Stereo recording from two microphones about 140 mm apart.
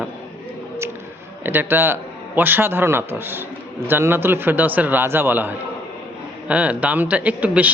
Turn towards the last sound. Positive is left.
turn(degrees=-10)  # may be behind; listen again after turning